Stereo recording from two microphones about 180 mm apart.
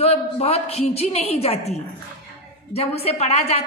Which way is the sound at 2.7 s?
35° left (ahead or behind).